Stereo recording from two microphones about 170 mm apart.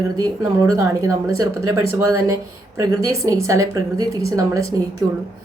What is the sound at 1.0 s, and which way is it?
A woman's voice, 20° right (ahead or behind).